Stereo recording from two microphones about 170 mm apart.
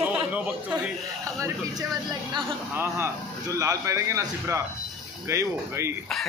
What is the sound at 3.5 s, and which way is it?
A man's voice, 20° right (ahead or behind).